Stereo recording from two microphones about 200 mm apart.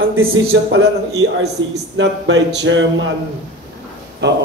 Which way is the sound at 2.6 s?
65° right (ahead or behind).